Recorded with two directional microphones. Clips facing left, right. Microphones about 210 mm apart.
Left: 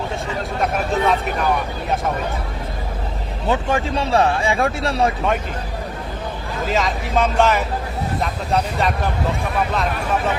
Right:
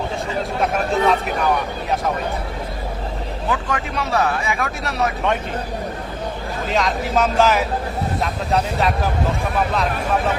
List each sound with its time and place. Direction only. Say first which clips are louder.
0.6 s speech: right 1 dB; centre (ahead or behind)
3.5 s speech: left 5 dB; 25° left (ahead or behind)
6.7 s speech: right 1 dB; centre (ahead or behind)